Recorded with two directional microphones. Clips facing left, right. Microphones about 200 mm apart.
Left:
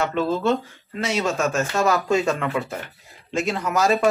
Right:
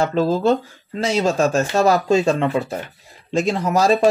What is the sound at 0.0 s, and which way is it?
Speech, 35° right (ahead or behind).